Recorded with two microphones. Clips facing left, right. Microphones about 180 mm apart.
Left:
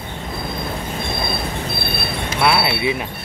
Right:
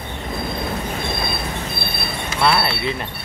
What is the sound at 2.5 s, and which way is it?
Speech, 10° left (ahead or behind).